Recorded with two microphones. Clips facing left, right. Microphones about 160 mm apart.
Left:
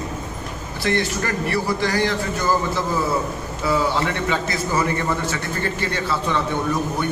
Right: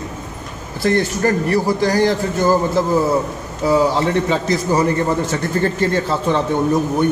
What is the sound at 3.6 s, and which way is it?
A man's voice, 35° right (ahead or behind).